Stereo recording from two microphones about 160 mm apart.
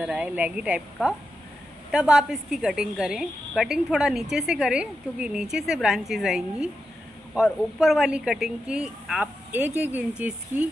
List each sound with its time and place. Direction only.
0.0 s speech: 5° right (ahead or behind)
1.9 s a woman's voice: 5° right (ahead or behind)